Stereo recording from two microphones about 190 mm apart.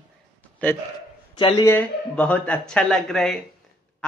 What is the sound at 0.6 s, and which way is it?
Speech, 10° left (ahead or behind).